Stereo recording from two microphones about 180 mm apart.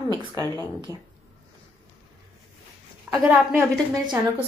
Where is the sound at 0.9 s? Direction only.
20° left (ahead or behind).